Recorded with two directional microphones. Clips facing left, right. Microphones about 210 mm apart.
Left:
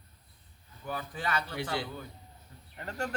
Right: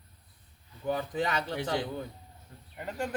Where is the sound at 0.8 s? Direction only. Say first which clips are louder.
Right 6 dB; 20° right (ahead or behind).